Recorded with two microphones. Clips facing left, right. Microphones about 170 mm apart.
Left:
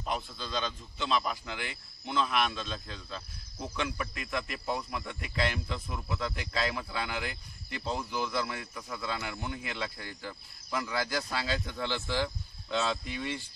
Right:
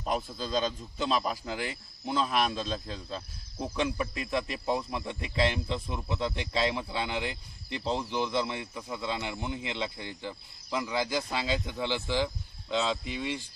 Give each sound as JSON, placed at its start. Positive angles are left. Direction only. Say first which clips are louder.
{"t": 0.3, "sound": "speech", "louder": "right 5 dB", "side_deg": -40}